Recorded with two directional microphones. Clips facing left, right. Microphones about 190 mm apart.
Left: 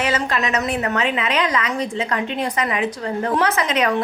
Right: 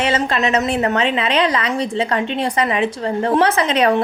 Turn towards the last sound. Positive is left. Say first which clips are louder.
# right 4 dB
turn(degrees=-30)  # may be behind; listen again after turning